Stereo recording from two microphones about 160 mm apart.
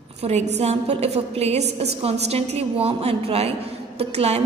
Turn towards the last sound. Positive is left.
turn(degrees=-40)  # may be behind; listen again after turning